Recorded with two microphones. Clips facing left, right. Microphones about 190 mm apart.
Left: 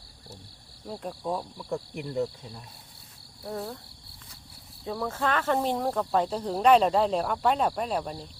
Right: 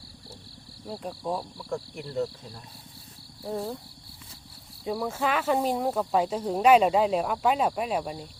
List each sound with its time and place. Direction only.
0.9 s speech: 5° right (ahead or behind)
1.5 s speech: 15° left (ahead or behind)
4.9 s speech: 10° right (ahead or behind)